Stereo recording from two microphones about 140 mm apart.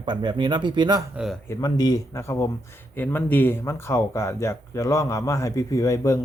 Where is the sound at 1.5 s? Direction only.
30° left (ahead or behind).